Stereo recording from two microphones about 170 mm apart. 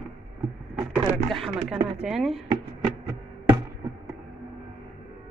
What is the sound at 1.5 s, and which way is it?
Speech, 5° right (ahead or behind).